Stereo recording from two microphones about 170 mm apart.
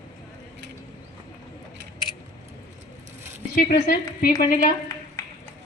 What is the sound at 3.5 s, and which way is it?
Speech, 70° left (ahead or behind).